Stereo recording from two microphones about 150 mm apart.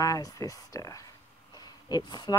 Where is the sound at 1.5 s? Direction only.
30° left (ahead or behind).